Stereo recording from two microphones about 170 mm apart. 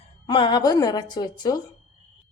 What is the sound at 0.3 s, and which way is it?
A woman's voice, 25° left (ahead or behind).